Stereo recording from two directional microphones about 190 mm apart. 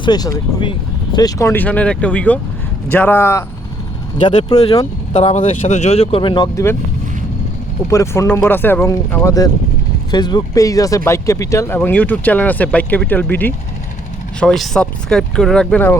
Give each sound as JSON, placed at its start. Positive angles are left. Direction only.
{"t": 0.0, "sound": "speech", "side_deg": 20}
{"t": 5.1, "sound": "speech", "side_deg": 35}
{"t": 7.9, "sound": "speech", "side_deg": 15}